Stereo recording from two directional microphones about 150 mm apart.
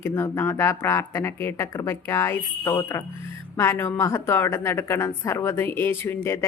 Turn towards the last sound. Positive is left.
turn(degrees=15)  # may be behind; listen again after turning